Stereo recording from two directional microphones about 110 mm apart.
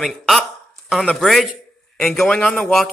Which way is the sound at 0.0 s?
Centre (ahead or behind).